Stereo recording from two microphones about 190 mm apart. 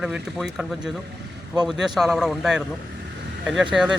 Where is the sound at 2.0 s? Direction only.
Centre (ahead or behind).